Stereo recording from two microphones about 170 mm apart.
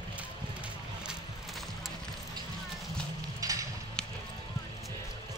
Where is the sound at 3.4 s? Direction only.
20° right (ahead or behind).